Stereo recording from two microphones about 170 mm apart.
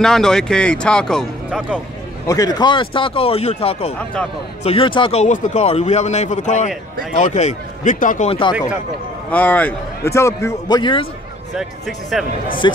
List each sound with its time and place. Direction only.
0.0 s speech: 5° left (ahead or behind)
2.2 s speech: 20° left (ahead or behind)
5.2 s a man's voice: 45° left (ahead or behind)
8.3 s speech: 30° left (ahead or behind)
9.3 s a man's voice: 10° left (ahead or behind); by 11.1 s 30° left (ahead or behind)
11.5 s speech: centre (ahead or behind)
12.6 s speech: 25° left (ahead or behind)